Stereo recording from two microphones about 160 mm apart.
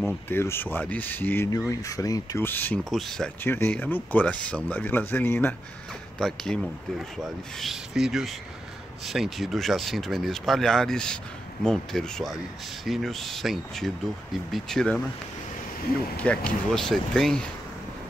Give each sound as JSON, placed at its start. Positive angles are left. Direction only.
{"t": 0.0, "sound": "speech", "side_deg": 15}
{"t": 2.8, "sound": "speech", "side_deg": 0}
{"t": 3.4, "sound": "speech", "side_deg": 15}
{"t": 6.1, "sound": "speech", "side_deg": 5}
{"t": 16.2, "sound": "speech", "side_deg": 5}